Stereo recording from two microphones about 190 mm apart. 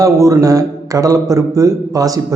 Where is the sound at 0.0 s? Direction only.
15° right (ahead or behind).